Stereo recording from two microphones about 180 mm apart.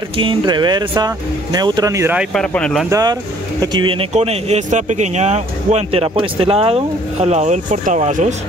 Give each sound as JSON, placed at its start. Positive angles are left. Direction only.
{"t": 0.2, "sound": "speech", "side_deg": -25}
{"t": 2.1, "sound": "speech", "side_deg": 5}
{"t": 2.9, "sound": "speech", "side_deg": -20}